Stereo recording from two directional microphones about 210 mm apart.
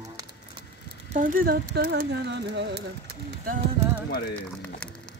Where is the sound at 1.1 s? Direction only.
40° right (ahead or behind); by 2.9 s 55° right (ahead or behind).